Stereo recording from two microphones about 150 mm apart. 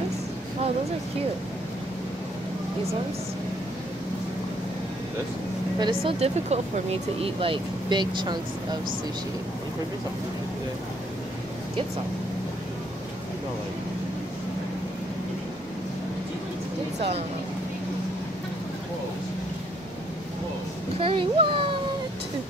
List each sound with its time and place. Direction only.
5.8 s speech: 30° right (ahead or behind)
6.1 s speech: 45° right (ahead or behind)
21.0 s speech: 35° right (ahead or behind)